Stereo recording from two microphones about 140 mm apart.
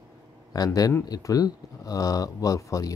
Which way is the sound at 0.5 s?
25° left (ahead or behind).